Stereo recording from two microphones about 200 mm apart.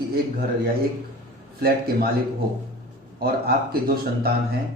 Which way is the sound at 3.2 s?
50° right (ahead or behind).